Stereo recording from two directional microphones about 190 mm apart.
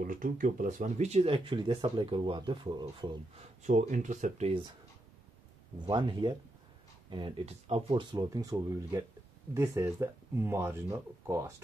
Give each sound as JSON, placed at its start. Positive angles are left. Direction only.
{"t": 0.0, "sound": "speech", "side_deg": -45}
{"t": 3.6, "sound": "speech", "side_deg": -40}
{"t": 5.9, "sound": "speech", "side_deg": -25}